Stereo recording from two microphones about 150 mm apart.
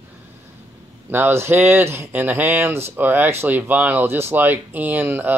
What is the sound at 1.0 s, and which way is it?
Speech, 15° right (ahead or behind).